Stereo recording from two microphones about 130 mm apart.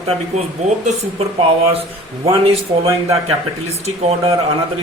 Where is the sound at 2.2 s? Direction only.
45° right (ahead or behind).